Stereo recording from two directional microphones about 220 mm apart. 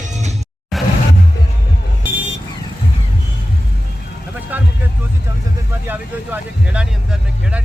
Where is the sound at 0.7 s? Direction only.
Centre (ahead or behind).